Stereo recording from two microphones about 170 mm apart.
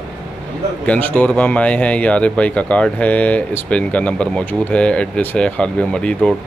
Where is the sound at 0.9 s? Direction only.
10° left (ahead or behind).